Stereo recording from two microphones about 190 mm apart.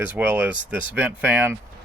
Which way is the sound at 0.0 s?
10° right (ahead or behind).